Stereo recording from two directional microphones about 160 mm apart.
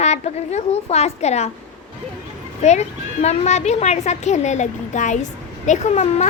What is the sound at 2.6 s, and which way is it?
A woman's voice, 45° left (ahead or behind).